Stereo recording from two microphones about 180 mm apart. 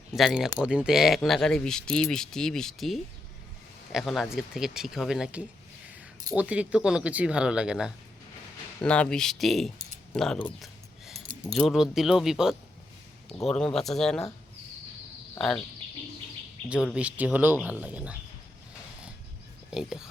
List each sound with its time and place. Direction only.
0.2 s speech: 5° right (ahead or behind)
15.4 s speech: 5° left (ahead or behind)
16.6 s speech: 5° right (ahead or behind)
19.7 s speech: 5° right (ahead or behind)